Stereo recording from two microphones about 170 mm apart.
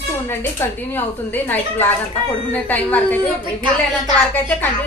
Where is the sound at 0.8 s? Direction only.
10° left (ahead or behind).